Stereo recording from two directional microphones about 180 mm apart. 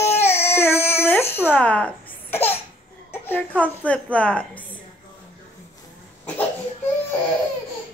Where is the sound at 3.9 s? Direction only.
5° left (ahead or behind).